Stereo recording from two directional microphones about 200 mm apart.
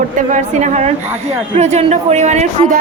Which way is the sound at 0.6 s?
35° right (ahead or behind).